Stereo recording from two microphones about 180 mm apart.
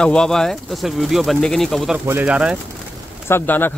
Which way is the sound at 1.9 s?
10° right (ahead or behind).